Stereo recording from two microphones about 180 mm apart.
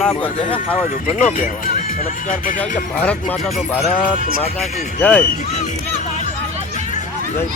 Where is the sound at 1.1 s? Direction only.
50° left (ahead or behind).